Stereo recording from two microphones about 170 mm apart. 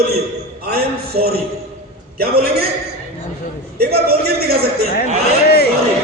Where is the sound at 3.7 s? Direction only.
65° right (ahead or behind).